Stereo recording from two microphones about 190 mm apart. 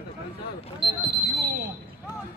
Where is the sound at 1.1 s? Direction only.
60° right (ahead or behind).